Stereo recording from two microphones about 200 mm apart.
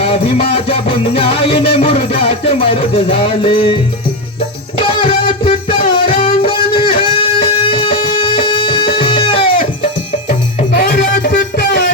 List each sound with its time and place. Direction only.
0.0 s music: 30° left (ahead or behind)
4.8 s music: 25° left (ahead or behind)
10.8 s music: 50° left (ahead or behind)